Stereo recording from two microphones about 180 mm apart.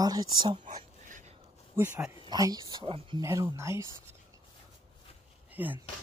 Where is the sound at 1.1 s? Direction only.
45° right (ahead or behind).